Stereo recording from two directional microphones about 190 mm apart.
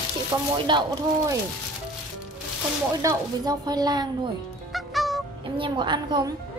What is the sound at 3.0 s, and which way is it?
A woman's voice, 20° right (ahead or behind).